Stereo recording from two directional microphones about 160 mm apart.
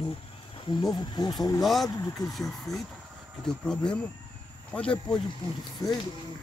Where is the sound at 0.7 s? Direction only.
25° left (ahead or behind).